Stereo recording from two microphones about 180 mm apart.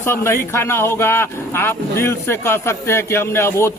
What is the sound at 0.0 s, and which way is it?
Speech, 15° left (ahead or behind).